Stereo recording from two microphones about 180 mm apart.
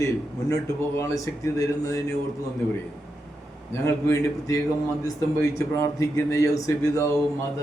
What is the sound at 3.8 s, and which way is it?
Speech, 15° left (ahead or behind).